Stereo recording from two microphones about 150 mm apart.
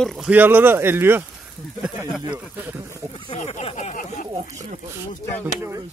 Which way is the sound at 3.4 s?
45° left (ahead or behind).